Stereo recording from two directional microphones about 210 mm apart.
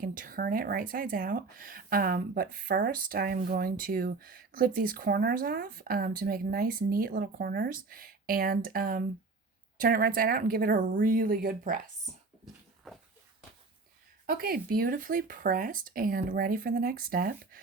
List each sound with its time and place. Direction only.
0.0 s speech: 40° right (ahead or behind)
14.3 s speech: 45° right (ahead or behind)